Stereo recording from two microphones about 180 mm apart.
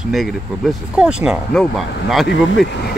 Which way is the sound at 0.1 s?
Centre (ahead or behind).